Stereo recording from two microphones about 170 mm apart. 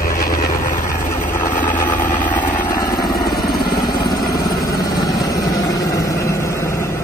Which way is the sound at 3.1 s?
65° left (ahead or behind).